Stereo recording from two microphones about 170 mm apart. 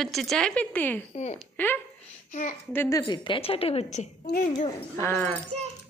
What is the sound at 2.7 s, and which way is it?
A woman's voice, 15° left (ahead or behind).